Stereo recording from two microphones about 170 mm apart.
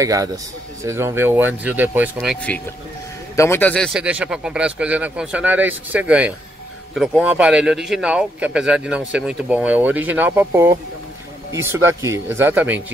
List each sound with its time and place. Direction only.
0.0 s speech: 20° right (ahead or behind)
3.3 s speech: 15° left (ahead or behind)
4.0 s speech: 5° right (ahead or behind)